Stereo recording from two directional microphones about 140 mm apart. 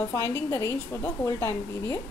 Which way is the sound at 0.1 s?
20° left (ahead or behind).